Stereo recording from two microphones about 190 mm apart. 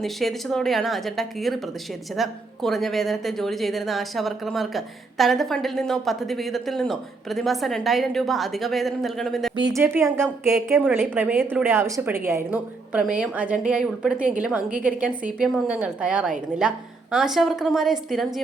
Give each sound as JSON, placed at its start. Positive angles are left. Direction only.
{"t": 0.0, "sound": "speech", "side_deg": 0}
{"t": 9.6, "sound": "a woman's voice", "side_deg": -25}
{"t": 9.8, "sound": "a woman's voice", "side_deg": -10}